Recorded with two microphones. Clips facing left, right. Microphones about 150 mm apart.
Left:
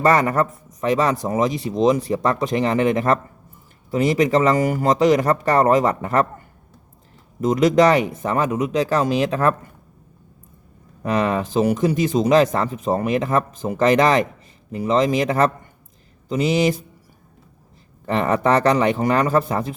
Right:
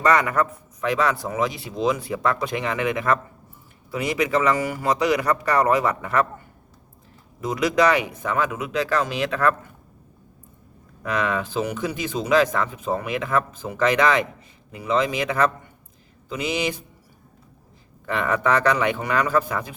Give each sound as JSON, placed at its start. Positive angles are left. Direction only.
{"t": 0.0, "sound": "speech", "side_deg": 40}
{"t": 7.5, "sound": "speech", "side_deg": 45}
{"t": 11.0, "sound": "speech", "side_deg": 35}
{"t": 18.0, "sound": "speech", "side_deg": 35}